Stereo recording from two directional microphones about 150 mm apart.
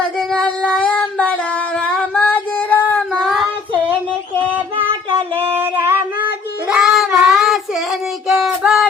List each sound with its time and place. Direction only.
0.3 s a sound: 10° left (ahead or behind)
3.1 s child singing: centre (ahead or behind)
5.6 s singing: 15° right (ahead or behind)
6.7 s child singing: 5° right (ahead or behind)